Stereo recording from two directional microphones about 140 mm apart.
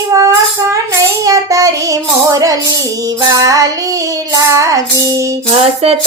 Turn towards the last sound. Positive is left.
turn(degrees=-50)  # may be behind; listen again after turning